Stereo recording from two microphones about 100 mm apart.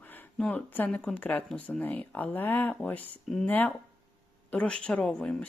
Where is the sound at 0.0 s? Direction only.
20° left (ahead or behind).